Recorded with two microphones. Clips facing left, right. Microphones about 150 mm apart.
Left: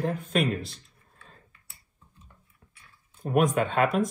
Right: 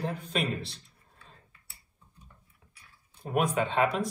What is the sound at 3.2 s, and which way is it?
Speech, 45° left (ahead or behind).